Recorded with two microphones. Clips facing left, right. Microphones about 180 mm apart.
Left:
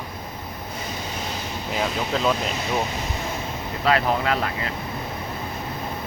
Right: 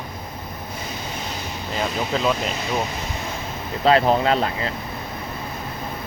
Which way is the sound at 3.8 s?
30° right (ahead or behind).